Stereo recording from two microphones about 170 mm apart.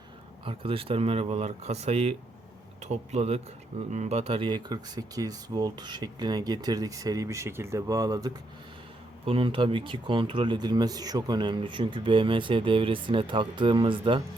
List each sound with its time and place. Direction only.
0.4 s speech: 30° right (ahead or behind)
9.2 s speech: 35° right (ahead or behind)